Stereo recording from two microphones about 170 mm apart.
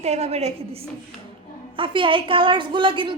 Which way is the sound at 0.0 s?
40° right (ahead or behind).